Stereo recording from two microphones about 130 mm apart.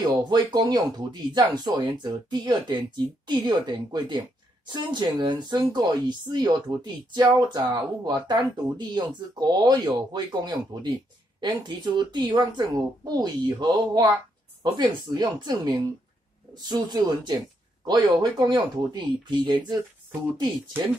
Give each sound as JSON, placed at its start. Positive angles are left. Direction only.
{"t": 0.2, "sound": "a woman's voice", "side_deg": -30}